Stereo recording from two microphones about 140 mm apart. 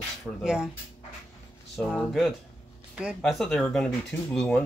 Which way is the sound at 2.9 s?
5° right (ahead or behind).